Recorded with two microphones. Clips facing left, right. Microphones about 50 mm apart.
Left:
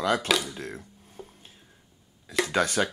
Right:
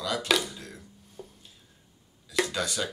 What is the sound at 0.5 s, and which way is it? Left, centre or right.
Music, left.